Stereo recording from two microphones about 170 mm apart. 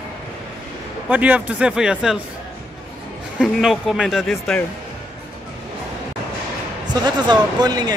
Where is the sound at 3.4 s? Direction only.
Centre (ahead or behind).